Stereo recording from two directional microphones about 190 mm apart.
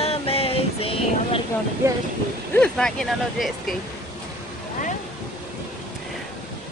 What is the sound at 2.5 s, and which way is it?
Speech, 5° left (ahead or behind).